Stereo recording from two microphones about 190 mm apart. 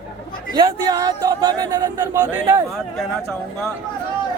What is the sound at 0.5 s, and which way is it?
Speech, 20° right (ahead or behind).